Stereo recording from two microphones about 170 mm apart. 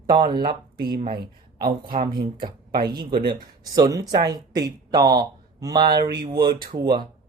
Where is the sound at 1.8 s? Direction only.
55° right (ahead or behind).